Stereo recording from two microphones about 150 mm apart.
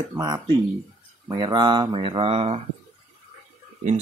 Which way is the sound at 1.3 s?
30° right (ahead or behind).